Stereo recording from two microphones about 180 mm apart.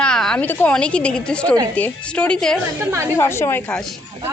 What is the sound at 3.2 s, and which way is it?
Speech, 15° left (ahead or behind).